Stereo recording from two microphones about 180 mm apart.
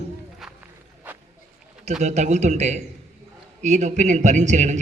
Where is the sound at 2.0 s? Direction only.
40° right (ahead or behind).